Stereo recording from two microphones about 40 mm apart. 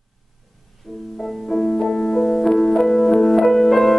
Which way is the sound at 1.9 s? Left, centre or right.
Centre.